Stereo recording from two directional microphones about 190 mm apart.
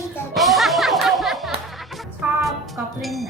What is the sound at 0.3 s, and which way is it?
Music, centre (ahead or behind).